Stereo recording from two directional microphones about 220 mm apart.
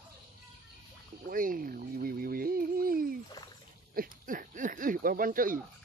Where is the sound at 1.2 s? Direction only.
40° right (ahead or behind).